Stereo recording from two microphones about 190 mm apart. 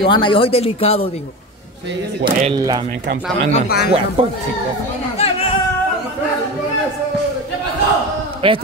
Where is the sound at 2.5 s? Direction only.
20° right (ahead or behind).